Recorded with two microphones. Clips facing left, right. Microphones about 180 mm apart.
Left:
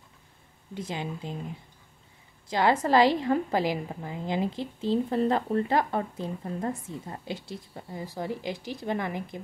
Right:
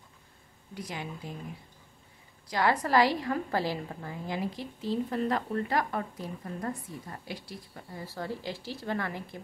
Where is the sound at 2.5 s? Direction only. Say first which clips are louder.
Left 4 dB; 25° left (ahead or behind).